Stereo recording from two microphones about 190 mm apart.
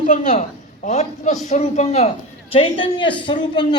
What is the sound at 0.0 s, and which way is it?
A woman's voice, 40° left (ahead or behind).